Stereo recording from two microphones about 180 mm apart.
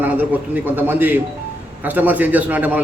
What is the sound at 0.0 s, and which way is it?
A man's voice, 10° right (ahead or behind).